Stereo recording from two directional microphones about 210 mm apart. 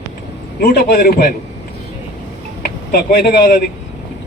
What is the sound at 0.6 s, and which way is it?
Speech, 45° left (ahead or behind).